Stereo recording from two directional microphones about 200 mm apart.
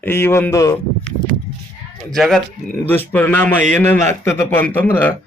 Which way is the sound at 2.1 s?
Centre (ahead or behind).